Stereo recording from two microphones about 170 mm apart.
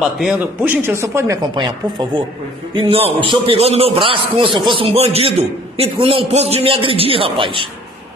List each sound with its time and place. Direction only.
0.2 s a man's voice: 5° right (ahead or behind); by 7.6 s 30° right (ahead or behind)